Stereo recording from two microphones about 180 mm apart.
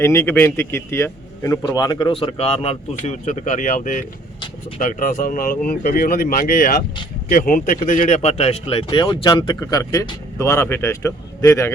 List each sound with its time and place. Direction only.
0.0 s a man's voice: 15° left (ahead or behind)